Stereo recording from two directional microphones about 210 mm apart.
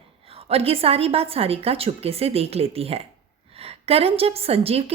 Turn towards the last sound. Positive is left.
turn(degrees=-30)  # may be behind; listen again after turning